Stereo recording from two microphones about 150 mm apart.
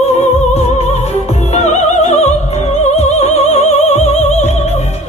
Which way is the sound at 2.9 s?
45° left (ahead or behind).